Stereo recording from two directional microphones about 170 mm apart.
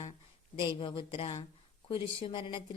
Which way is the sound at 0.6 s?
30° left (ahead or behind).